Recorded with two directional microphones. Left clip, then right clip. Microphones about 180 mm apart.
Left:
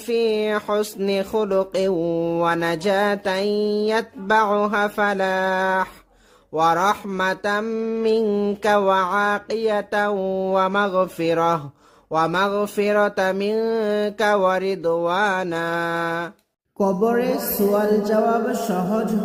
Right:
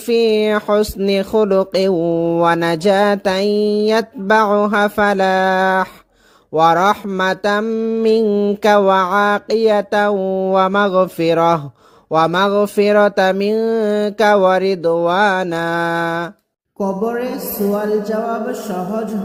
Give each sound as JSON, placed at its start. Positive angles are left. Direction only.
{"t": 0.1, "sound": "speech", "side_deg": -35}
{"t": 6.5, "sound": "music", "side_deg": -30}
{"t": 7.6, "sound": "music", "side_deg": -20}
{"t": 8.0, "sound": "speech", "side_deg": -30}
{"t": 8.3, "sound": "music", "side_deg": -20}
{"t": 8.6, "sound": "music", "side_deg": -30}
{"t": 16.7, "sound": "speech", "side_deg": 0}